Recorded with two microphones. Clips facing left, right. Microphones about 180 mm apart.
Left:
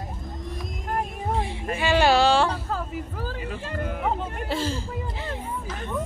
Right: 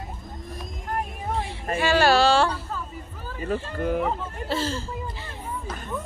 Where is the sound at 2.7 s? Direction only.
90° left.